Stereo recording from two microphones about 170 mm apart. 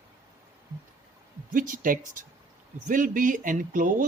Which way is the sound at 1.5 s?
55° right (ahead or behind).